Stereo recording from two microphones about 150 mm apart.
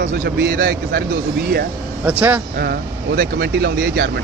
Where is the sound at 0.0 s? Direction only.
65° right (ahead or behind); by 1.0 s 85° right.